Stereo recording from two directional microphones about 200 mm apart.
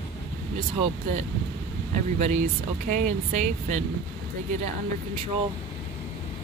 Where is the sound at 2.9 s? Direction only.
40° right (ahead or behind).